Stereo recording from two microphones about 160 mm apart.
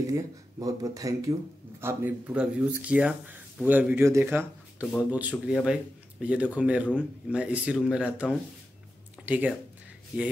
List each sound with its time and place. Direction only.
0.0 s speech: 20° right (ahead or behind)